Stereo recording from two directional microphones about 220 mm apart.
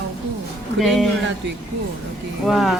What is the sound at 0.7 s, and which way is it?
Speech, centre (ahead or behind).